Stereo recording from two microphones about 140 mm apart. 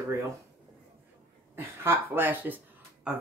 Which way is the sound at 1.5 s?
15° right (ahead or behind).